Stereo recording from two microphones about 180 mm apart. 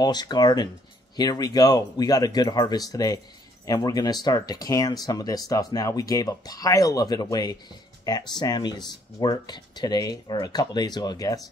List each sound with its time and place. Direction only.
0.0 s speech: 25° left (ahead or behind)